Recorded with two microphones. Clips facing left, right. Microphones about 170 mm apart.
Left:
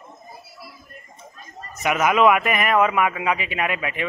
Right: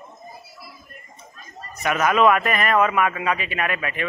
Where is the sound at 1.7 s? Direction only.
15° left (ahead or behind).